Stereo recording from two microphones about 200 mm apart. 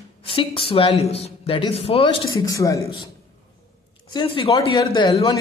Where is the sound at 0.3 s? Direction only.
25° left (ahead or behind).